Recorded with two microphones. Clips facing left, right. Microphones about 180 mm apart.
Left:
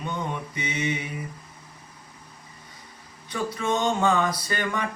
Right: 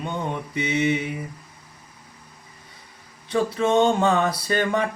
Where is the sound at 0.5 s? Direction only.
30° right (ahead or behind).